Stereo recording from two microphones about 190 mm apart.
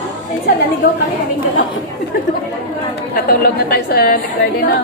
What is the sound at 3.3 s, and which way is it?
Speech, 55° left (ahead or behind).